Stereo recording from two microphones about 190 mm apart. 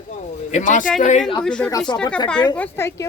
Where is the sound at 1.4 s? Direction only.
5° left (ahead or behind).